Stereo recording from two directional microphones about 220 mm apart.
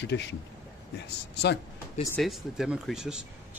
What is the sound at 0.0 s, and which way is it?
Speech, 50° left (ahead or behind).